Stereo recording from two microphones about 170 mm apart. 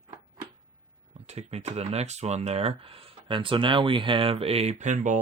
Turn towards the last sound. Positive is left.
turn(degrees=-45)  # may be behind; listen again after turning